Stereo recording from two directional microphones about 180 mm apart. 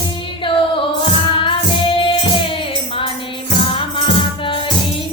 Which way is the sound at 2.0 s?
30° left (ahead or behind).